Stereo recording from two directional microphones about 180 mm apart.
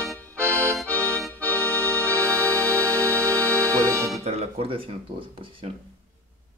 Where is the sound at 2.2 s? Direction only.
15° right (ahead or behind).